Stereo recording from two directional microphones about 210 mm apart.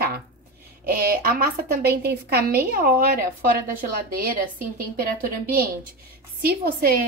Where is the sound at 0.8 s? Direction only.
45° right (ahead or behind).